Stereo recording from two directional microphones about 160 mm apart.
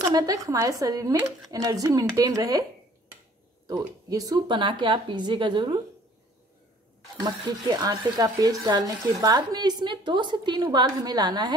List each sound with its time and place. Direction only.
0.1 s speech: 20° right (ahead or behind)
3.6 s speech: 25° right (ahead or behind)
7.2 s speech: 25° right (ahead or behind)